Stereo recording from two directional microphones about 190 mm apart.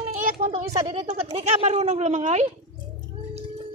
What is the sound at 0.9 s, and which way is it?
Speech, 30° right (ahead or behind).